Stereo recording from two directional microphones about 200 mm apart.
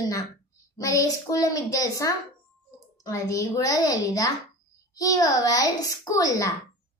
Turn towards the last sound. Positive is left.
turn(degrees=15)  # may be behind; listen again after turning